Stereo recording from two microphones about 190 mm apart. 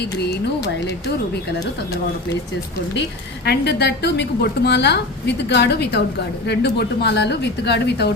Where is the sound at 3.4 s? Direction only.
60° left (ahead or behind).